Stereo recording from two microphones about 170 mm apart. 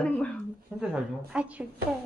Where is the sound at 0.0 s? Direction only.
5° left (ahead or behind).